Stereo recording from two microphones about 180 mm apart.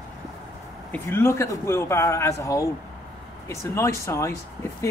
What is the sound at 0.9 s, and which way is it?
Speech, 15° left (ahead or behind).